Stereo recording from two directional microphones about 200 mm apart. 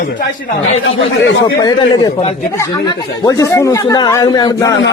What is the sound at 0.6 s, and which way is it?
Speech, 65° left (ahead or behind).